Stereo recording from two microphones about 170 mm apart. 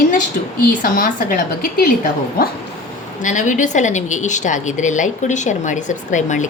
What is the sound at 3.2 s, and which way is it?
A woman's voice, 50° left (ahead or behind).